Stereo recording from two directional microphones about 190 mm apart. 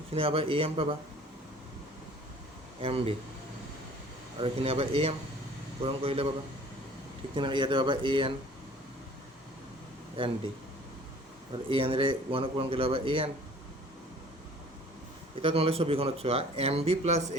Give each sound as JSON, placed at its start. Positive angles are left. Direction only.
{"t": 0.1, "sound": "speech", "side_deg": -30}
{"t": 2.8, "sound": "speech", "side_deg": -30}
{"t": 4.4, "sound": "speech", "side_deg": -30}
{"t": 7.3, "sound": "speech", "side_deg": -25}
{"t": 11.7, "sound": "speech", "side_deg": -30}
{"t": 15.4, "sound": "speech", "side_deg": -30}